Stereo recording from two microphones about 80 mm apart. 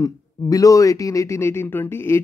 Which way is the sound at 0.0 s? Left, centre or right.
Left.